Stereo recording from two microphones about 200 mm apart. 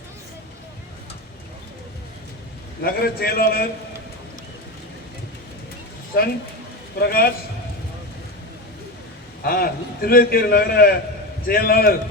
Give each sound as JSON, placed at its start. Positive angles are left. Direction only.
{"t": 2.8, "sound": "a man's voice", "side_deg": 50}
{"t": 7.0, "sound": "a man's voice", "side_deg": 50}
{"t": 9.4, "sound": "a man's voice", "side_deg": 50}